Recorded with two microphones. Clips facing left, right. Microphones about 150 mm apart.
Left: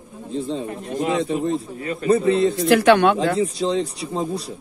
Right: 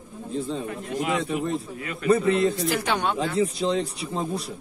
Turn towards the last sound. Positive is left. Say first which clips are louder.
# left 3 dB
turn(degrees=35)  # may be behind; listen again after turning